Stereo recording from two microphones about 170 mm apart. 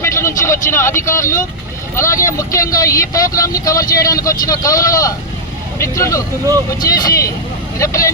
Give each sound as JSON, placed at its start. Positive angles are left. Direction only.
{"t": 0.0, "sound": "speech", "side_deg": 15}